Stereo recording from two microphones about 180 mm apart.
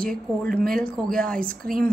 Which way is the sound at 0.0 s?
50° right (ahead or behind).